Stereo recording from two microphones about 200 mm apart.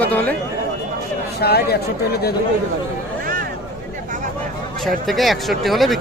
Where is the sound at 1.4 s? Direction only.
55° left (ahead or behind).